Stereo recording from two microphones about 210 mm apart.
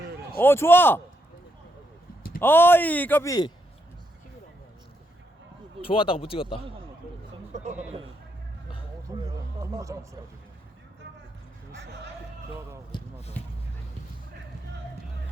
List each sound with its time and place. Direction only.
0.3 s speech: 10° left (ahead or behind)
2.4 s speech: 10° left (ahead or behind)
5.8 s speech: 25° left (ahead or behind)
7.5 s a sound: 35° right (ahead or behind)
9.1 s a sound: 15° right (ahead or behind)
9.6 s speech: 15° right (ahead or behind)
12.9 s basketball bounce: 20° left (ahead or behind)
13.4 s music: 5° left (ahead or behind)